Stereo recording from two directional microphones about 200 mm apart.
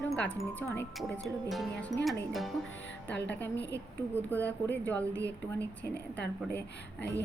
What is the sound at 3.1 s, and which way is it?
Speech, 60° left (ahead or behind).